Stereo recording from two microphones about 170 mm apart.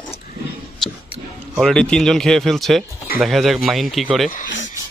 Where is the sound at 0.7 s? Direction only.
Centre (ahead or behind).